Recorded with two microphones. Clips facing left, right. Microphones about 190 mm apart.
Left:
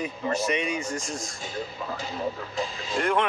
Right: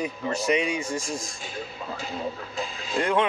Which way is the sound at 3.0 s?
15° right (ahead or behind).